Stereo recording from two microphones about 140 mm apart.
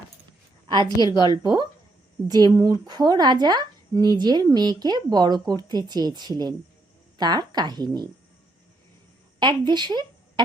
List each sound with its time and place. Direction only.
0.7 s a woman's voice: 30° right (ahead or behind)
0.9 s a woman's voice: 30° left (ahead or behind)
1.2 s speech: 25° right (ahead or behind)
9.4 s a woman's voice: 35° right (ahead or behind)